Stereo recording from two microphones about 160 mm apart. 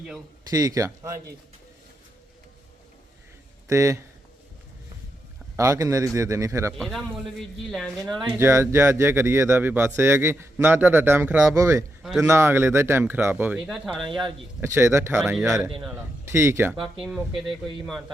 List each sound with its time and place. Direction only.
0.5 s a man's voice: 20° right (ahead or behind)
3.7 s a man's voice: 20° right (ahead or behind)
5.5 s a man's voice: 20° right (ahead or behind)
6.7 s a man's voice: centre (ahead or behind)
8.4 s speech: 15° right (ahead or behind)
11.5 s a man's voice: 20° right (ahead or behind)
13.7 s a man's voice: centre (ahead or behind)
14.6 s speech: 15° right (ahead or behind)
15.2 s a man's voice: 5° right (ahead or behind)
16.3 s speech: 15° right (ahead or behind)
16.8 s a man's voice: centre (ahead or behind)